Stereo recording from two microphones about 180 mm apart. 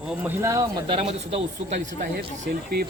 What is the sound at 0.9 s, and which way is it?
Speech, 35° right (ahead or behind).